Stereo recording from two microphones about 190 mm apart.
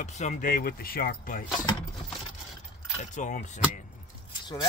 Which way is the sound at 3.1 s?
40° left (ahead or behind).